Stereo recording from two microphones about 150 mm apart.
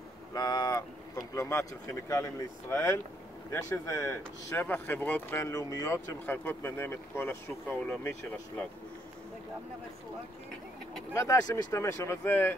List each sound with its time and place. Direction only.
0.3 s speech: 25° left (ahead or behind)
11.1 s speech: 20° left (ahead or behind)